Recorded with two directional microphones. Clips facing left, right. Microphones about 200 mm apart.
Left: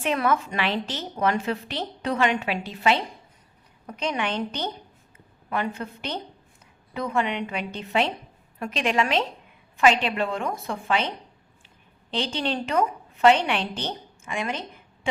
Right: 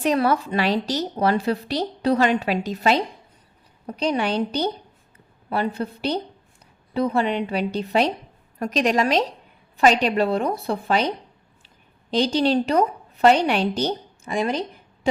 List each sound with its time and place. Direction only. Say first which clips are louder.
0.0 s a woman's voice: right 4 dB; 35° right (ahead or behind)
12.1 s a woman's voice: right 8 dB; 40° right (ahead or behind)